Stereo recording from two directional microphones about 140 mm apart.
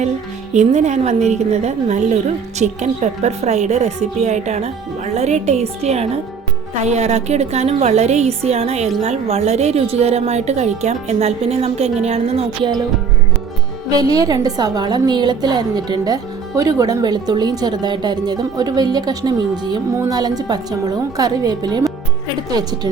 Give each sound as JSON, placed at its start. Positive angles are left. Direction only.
{"t": 0.5, "sound": "a woman's voice", "side_deg": -55}
{"t": 13.9, "sound": "a woman's voice", "side_deg": -25}